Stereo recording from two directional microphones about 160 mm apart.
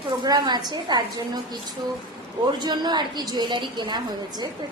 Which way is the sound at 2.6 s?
25° right (ahead or behind).